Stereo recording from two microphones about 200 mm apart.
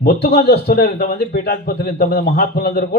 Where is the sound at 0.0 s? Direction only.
55° left (ahead or behind).